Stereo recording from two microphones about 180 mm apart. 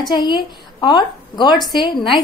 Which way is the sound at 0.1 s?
25° left (ahead or behind).